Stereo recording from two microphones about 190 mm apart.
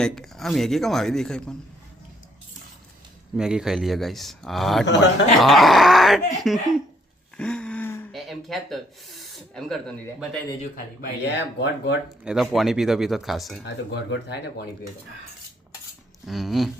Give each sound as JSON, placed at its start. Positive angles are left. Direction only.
{"t": 0.0, "sound": "a man's voice", "side_deg": 0}
{"t": 3.3, "sound": "a man's voice", "side_deg": -5}
{"t": 7.3, "sound": "a sound", "side_deg": 5}
{"t": 8.1, "sound": "a man's voice", "side_deg": 0}
{"t": 11.2, "sound": "speech", "side_deg": 65}
{"t": 12.0, "sound": "a man's voice", "side_deg": 0}
{"t": 13.9, "sound": "speech", "side_deg": 65}
{"t": 16.2, "sound": "a man's voice", "side_deg": 0}